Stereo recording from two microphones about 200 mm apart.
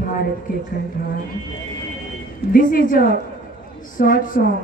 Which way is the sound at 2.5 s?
45° left (ahead or behind).